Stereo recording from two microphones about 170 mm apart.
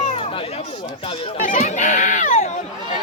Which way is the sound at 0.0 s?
35° left (ahead or behind).